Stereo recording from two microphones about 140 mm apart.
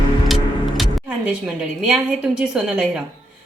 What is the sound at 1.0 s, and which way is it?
A woman's voice, 10° right (ahead or behind).